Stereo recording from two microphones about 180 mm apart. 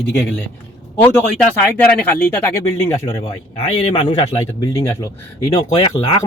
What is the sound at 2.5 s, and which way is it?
Speech, 20° left (ahead or behind).